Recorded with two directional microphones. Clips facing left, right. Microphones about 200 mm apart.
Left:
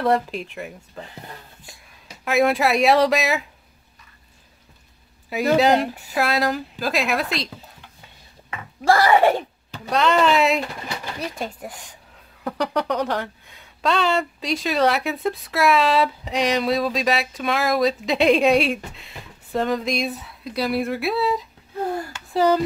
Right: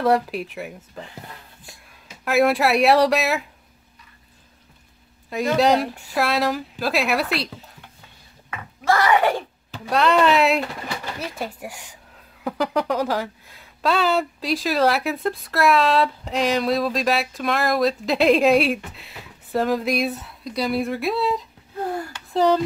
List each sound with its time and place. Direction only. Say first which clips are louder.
0.0 s speech: right 1 dB; centre (ahead or behind)
2.2 s speech: right 1 dB; centre (ahead or behind)
5.3 s speech: left 1 dB; centre (ahead or behind)
8.5 s a sound: left 3 dB; 30° left (ahead or behind)
9.8 s speech: right 1 dB; centre (ahead or behind)
22.3 s a sound: even; centre (ahead or behind)